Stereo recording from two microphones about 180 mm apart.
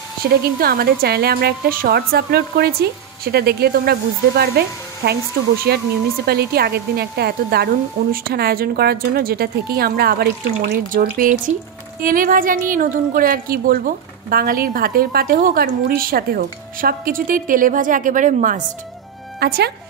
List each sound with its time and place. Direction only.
0.3 s a woman's voice: 55° right (ahead or behind)
19.4 s a woman's voice: 65° right (ahead or behind)